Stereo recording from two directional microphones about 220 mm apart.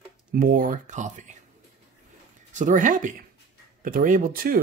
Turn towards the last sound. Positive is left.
turn(degrees=-40)  # may be behind; listen again after turning